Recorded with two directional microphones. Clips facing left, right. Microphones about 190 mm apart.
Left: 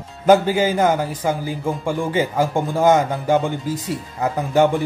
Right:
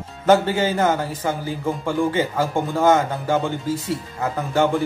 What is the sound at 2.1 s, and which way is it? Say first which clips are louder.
Speech: left 2 dB; 15° left (ahead or behind).